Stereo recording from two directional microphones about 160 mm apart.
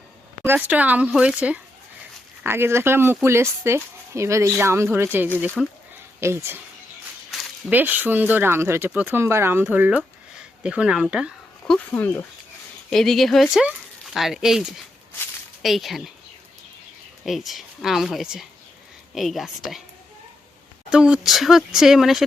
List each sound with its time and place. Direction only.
0.4 s speech: 10° right (ahead or behind)
5.6 s speech: centre (ahead or behind)
6.1 s speech: 15° right (ahead or behind)
11.6 s speech: 10° left (ahead or behind)
12.9 s speech: centre (ahead or behind)
15.6 s speech: centre (ahead or behind)
17.2 s speech: centre (ahead or behind)
20.9 s speech: 5° right (ahead or behind)